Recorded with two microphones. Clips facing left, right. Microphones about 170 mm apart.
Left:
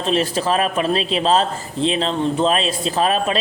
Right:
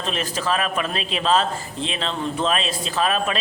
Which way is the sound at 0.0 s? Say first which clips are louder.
Left 7 dB; 35° left (ahead or behind).